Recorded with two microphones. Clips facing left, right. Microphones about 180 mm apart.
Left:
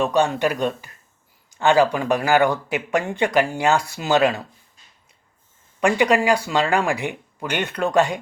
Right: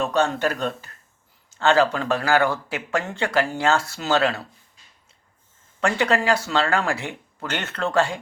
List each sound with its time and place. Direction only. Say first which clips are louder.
0.0 s a man's voice: left 2 dB; 15° left (ahead or behind)
5.8 s a man's voice: left 4 dB; 15° left (ahead or behind)